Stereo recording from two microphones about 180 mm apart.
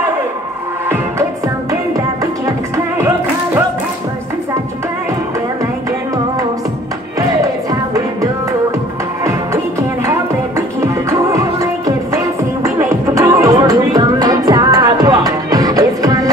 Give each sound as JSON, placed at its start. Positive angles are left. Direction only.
{"t": 1.7, "sound": "music", "side_deg": -15}
{"t": 10.8, "sound": "music", "side_deg": -15}